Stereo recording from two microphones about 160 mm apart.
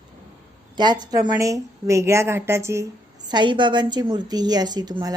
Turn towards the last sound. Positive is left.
turn(degrees=-25)  # may be behind; listen again after turning